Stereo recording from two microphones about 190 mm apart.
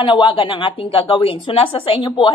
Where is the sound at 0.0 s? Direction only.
25° left (ahead or behind).